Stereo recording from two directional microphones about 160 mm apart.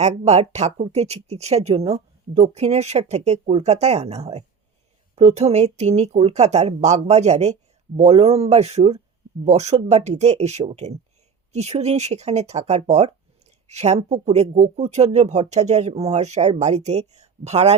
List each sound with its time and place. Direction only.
0.0 s speech: 45° right (ahead or behind)